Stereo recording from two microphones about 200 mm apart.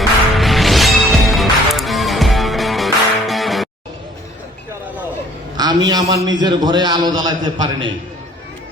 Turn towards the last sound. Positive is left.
turn(degrees=-20)  # may be behind; listen again after turning